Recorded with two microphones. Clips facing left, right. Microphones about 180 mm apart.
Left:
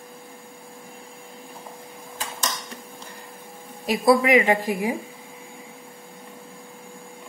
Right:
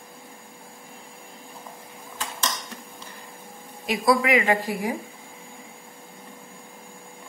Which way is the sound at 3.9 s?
25° left (ahead or behind).